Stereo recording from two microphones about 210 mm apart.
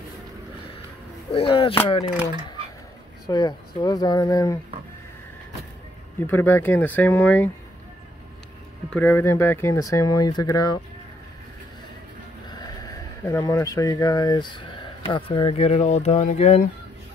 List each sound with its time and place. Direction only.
1.3 s speech: 25° left (ahead or behind)
3.3 s speech: 20° left (ahead or behind)
6.2 s speech: 10° left (ahead or behind)
8.9 s speech: 10° left (ahead or behind)
13.2 s speech: 15° left (ahead or behind); by 16.5 s 30° left (ahead or behind)